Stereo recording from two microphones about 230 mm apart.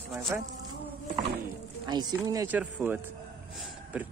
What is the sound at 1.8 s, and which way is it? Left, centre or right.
Speech, centre.